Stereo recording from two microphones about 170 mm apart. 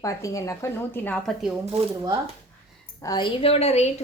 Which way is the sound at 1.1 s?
Centre (ahead or behind).